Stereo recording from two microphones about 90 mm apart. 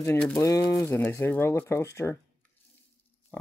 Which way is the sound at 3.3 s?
30° left (ahead or behind).